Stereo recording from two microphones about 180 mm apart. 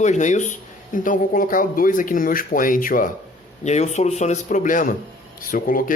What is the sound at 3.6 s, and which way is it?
Speech, 40° left (ahead or behind).